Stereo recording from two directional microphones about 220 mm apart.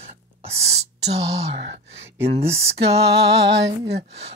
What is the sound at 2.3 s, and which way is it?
Speech, 30° right (ahead or behind).